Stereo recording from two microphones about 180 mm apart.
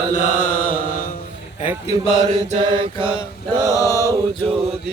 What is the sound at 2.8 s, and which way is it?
Mantra, 30° right (ahead or behind).